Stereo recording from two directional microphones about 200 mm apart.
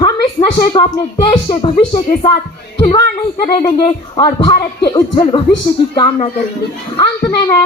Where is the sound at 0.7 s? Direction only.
25° left (ahead or behind).